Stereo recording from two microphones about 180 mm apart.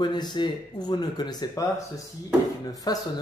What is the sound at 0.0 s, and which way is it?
Speech, 25° left (ahead or behind).